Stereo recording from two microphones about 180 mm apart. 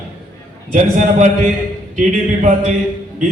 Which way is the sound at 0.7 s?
40° right (ahead or behind).